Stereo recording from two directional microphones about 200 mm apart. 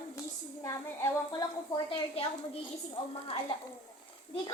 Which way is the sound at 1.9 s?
25° left (ahead or behind).